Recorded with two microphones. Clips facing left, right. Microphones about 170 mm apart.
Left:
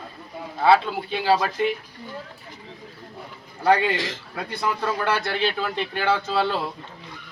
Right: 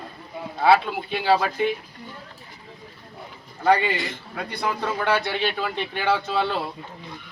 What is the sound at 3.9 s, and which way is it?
Speech, 90° left.